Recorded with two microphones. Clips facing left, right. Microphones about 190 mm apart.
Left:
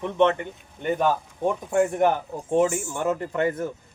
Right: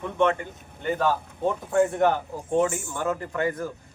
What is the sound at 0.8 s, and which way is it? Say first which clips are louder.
Speech: left 2 dB; 15° left (ahead or behind).